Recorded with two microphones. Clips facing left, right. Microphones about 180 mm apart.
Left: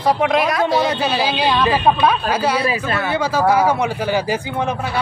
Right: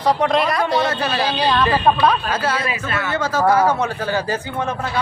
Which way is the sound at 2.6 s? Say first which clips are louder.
Left 4 dB; 35° left (ahead or behind).